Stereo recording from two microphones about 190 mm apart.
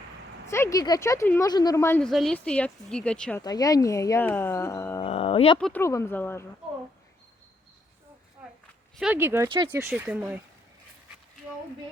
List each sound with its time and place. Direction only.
0.4 s speech: 15° left (ahead or behind)
3.4 s speech: 20° left (ahead or behind)
5.0 s speech: 30° left (ahead or behind)
5.5 s speech: 5° left (ahead or behind)
9.0 s speech: 10° right (ahead or behind)